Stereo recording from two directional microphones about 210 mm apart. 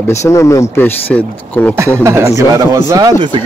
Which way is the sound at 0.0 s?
15° left (ahead or behind).